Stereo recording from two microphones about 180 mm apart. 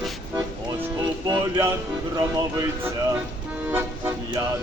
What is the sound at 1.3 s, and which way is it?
Music, 15° right (ahead or behind).